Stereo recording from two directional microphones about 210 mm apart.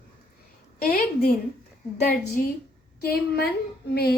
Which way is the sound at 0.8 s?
45° left (ahead or behind).